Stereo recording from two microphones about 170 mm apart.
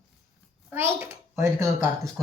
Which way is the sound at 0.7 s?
15° right (ahead or behind).